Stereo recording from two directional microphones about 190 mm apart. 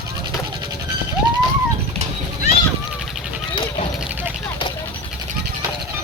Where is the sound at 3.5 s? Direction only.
25° left (ahead or behind).